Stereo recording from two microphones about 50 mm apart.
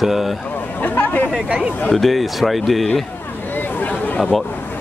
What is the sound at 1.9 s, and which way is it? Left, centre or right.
Speech, centre.